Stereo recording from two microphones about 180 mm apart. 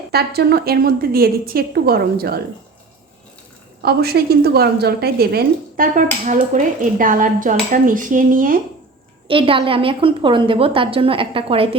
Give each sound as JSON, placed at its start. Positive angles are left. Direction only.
{"t": 0.1, "sound": "a woman's voice", "side_deg": -60}
{"t": 3.8, "sound": "a woman's voice", "side_deg": -60}
{"t": 9.2, "sound": "a woman's voice", "side_deg": -30}